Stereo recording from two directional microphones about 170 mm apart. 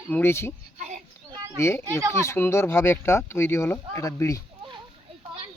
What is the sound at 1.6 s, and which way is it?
Speech, 15° left (ahead or behind).